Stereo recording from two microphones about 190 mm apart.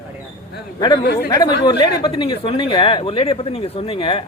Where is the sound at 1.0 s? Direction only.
60° left (ahead or behind).